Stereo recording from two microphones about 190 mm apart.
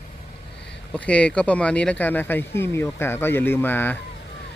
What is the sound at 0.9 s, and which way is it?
Speech, 5° left (ahead or behind).